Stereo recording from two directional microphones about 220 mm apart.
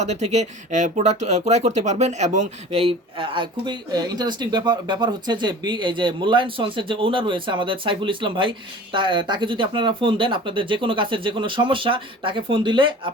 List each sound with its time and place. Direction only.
0.0 s speech: 30° right (ahead or behind)